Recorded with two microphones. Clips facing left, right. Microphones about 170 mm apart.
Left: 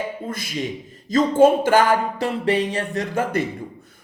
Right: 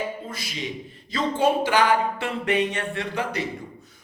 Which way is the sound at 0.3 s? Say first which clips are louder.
Left 6 dB; 50° left (ahead or behind).